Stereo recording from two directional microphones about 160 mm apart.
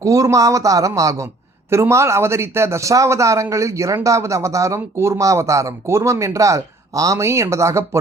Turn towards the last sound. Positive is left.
turn(degrees=-20)  # may be behind; listen again after turning